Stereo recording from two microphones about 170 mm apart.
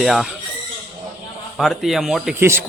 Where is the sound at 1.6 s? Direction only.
Centre (ahead or behind).